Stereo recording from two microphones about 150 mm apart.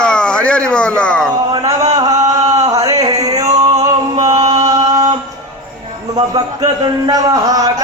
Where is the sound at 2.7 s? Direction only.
20° right (ahead or behind).